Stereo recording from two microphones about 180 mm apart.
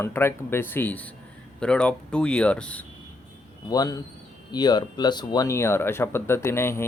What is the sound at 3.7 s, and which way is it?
A man's voice, 20° left (ahead or behind).